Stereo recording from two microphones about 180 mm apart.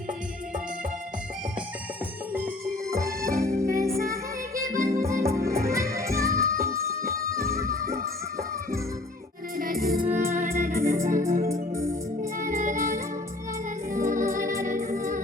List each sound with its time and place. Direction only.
2.9 s accordion: 15° right (ahead or behind)
4.0 s music: 15° right (ahead or behind)
9.6 s music: 50° right (ahead or behind)
13.9 s music: 50° right (ahead or behind)